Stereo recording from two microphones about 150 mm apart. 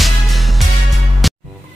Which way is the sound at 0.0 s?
Centre (ahead or behind).